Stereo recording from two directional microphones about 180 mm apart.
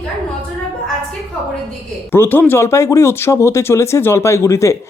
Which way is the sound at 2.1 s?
10° left (ahead or behind).